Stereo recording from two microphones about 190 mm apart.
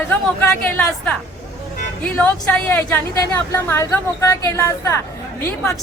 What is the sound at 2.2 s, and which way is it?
A woman's voice, 10° left (ahead or behind).